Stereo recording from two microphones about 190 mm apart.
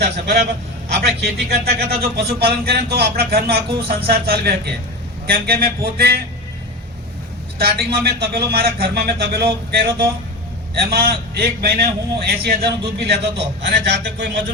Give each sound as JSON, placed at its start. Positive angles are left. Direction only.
{"t": 0.0, "sound": "a man's voice", "side_deg": -60}
{"t": 7.6, "sound": "a man's voice", "side_deg": -55}